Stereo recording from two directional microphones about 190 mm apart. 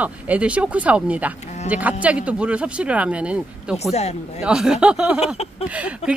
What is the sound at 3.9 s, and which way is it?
Speech, 35° left (ahead or behind).